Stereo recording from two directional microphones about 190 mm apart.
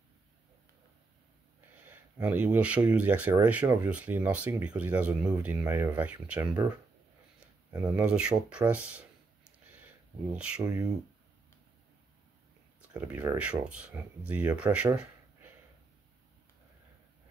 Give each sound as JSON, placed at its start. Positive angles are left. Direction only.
{"t": 1.9, "sound": "speech", "side_deg": -10}
{"t": 6.4, "sound": "speech", "side_deg": -20}
{"t": 7.9, "sound": "speech", "side_deg": -5}
{"t": 10.3, "sound": "speech", "side_deg": -5}
{"t": 10.6, "sound": "speech", "side_deg": -20}
{"t": 12.9, "sound": "speech", "side_deg": -15}